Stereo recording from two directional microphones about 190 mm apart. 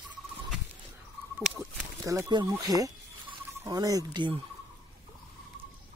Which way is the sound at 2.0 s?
15° right (ahead or behind).